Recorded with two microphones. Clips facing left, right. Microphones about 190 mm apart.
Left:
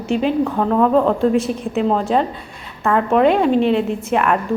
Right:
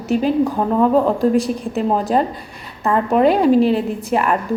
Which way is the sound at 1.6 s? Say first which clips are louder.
Left 1 dB; centre (ahead or behind).